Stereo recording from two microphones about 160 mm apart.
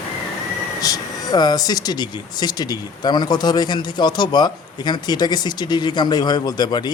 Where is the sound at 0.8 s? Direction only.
25° left (ahead or behind).